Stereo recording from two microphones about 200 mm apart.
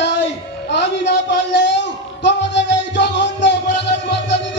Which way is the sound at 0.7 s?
60° left (ahead or behind).